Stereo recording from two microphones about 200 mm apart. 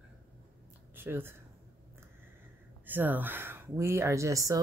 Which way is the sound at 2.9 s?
10° right (ahead or behind).